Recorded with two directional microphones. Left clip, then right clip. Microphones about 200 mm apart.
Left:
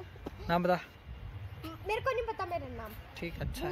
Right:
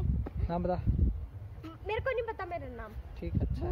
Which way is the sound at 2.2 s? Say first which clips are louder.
Left 1 dB; 15° right (ahead or behind).